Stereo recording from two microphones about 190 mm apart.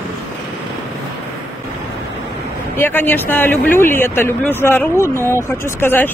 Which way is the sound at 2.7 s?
10° left (ahead or behind).